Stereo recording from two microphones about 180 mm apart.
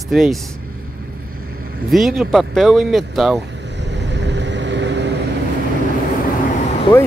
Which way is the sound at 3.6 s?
75° right (ahead or behind).